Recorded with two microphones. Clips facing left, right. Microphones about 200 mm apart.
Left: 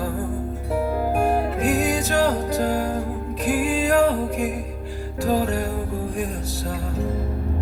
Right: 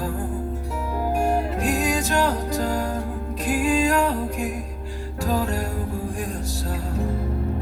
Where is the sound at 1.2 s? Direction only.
60° left (ahead or behind).